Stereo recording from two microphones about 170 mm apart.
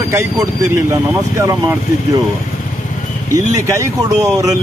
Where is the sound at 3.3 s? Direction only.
20° right (ahead or behind).